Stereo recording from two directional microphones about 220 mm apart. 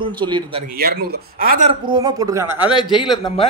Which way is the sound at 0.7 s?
45° right (ahead or behind).